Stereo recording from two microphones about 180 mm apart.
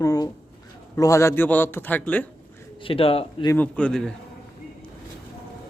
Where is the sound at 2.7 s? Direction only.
30° left (ahead or behind).